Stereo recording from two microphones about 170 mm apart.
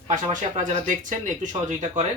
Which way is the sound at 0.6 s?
50° right (ahead or behind).